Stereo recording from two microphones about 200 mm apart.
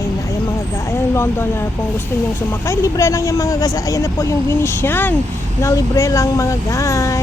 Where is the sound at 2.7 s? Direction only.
15° left (ahead or behind).